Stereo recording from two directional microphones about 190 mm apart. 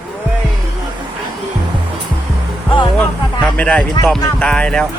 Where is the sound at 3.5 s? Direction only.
5° left (ahead or behind).